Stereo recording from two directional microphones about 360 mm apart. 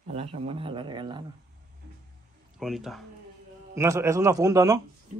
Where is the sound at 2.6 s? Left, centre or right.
Centre.